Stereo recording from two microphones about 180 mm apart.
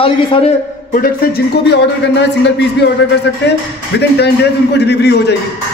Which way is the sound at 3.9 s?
75° left (ahead or behind).